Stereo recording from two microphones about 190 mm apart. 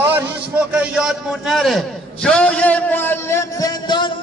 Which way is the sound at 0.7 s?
5° right (ahead or behind).